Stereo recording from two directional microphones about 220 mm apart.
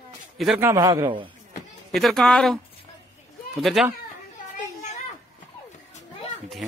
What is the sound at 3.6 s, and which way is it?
Speech, centre (ahead or behind).